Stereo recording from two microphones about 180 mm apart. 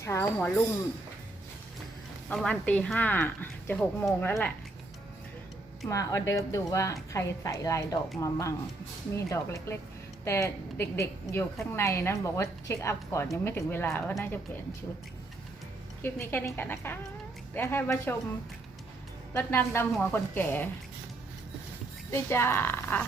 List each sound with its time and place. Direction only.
0.0 s speech: 15° left (ahead or behind)
2.3 s speech: 5° left (ahead or behind)
5.9 s speech: 20° left (ahead or behind)
16.0 s speech: 15° left (ahead or behind)
19.3 s speech: 10° left (ahead or behind)
22.1 s speech: 15° left (ahead or behind)